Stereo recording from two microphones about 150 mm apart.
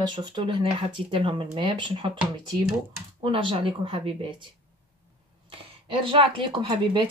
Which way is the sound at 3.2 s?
35° right (ahead or behind).